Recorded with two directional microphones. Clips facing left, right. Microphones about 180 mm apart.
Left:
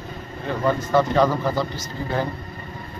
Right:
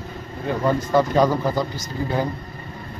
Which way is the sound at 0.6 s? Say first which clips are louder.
Even; 15° right (ahead or behind).